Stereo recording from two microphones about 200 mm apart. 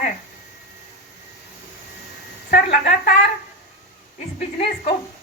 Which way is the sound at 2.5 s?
40° left (ahead or behind).